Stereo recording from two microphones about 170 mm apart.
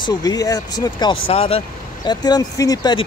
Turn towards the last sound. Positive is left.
turn(degrees=25)  # may be behind; listen again after turning